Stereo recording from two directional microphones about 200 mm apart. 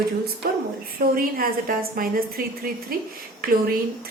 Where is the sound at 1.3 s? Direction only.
45° right (ahead or behind).